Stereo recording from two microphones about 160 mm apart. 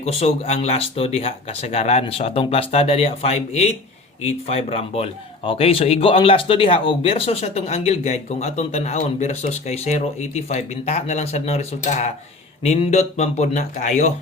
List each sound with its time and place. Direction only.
0.0 s a man's voice: 40° left (ahead or behind)